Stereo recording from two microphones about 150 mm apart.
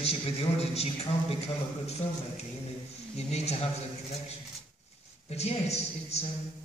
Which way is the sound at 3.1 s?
45° left (ahead or behind).